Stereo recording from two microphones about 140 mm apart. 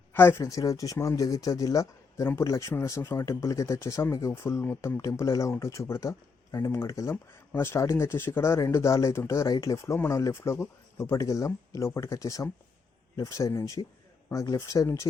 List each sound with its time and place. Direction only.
0.1 s speech: 15° left (ahead or behind)